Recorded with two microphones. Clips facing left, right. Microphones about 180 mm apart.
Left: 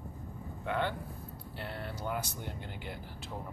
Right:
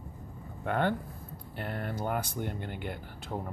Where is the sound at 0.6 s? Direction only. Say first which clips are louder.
Right 4 dB; 50° right (ahead or behind).